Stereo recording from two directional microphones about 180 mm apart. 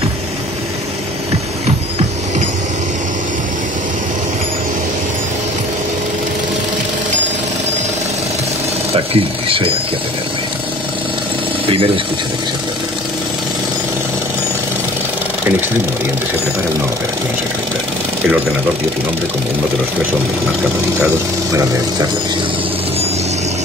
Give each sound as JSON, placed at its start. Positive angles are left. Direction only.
{"t": 8.9, "sound": "speech", "side_deg": -30}
{"t": 11.6, "sound": "speech", "side_deg": -30}